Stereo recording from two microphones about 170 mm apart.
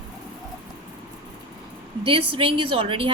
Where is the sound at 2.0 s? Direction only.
30° right (ahead or behind).